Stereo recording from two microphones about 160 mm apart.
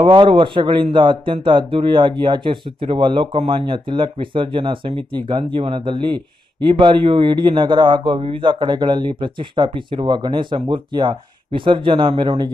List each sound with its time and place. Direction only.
0.0 s a man's voice: 30° right (ahead or behind)